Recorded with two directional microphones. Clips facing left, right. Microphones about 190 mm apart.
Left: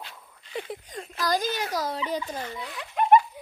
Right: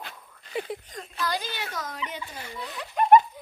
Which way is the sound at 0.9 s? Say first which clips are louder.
Left 5 dB; 40° left (ahead or behind).